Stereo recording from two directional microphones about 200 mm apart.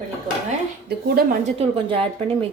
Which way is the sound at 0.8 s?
50° right (ahead or behind).